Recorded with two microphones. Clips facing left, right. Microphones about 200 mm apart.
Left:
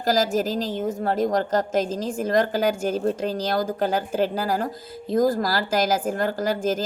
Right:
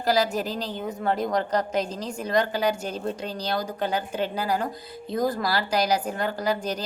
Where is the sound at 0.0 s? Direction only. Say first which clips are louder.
Left 2 dB; 40° left (ahead or behind).